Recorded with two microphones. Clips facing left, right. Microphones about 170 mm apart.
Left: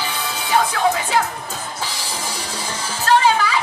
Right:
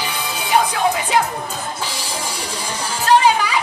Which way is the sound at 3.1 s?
15° right (ahead or behind).